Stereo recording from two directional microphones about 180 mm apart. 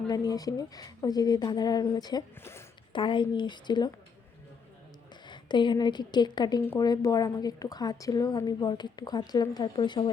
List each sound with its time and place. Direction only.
0.1 s a woman's voice: 20° left (ahead or behind)
2.9 s a woman's voice: 25° left (ahead or behind)
5.2 s a woman's voice: 25° left (ahead or behind)